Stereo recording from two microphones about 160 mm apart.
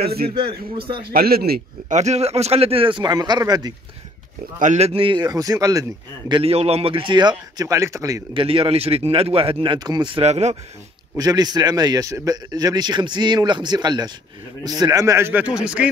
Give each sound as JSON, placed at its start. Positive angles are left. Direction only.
{"t": 0.0, "sound": "a man's voice", "side_deg": -75}
{"t": 0.3, "sound": "speech", "side_deg": -35}
{"t": 0.9, "sound": "a man's voice", "side_deg": -70}
{"t": 1.9, "sound": "speech", "side_deg": -45}
{"t": 4.6, "sound": "a man's voice", "side_deg": -45}
{"t": 6.4, "sound": "a man's voice", "side_deg": -40}
{"t": 8.3, "sound": "speech", "side_deg": -35}
{"t": 11.1, "sound": "a man's voice", "side_deg": -25}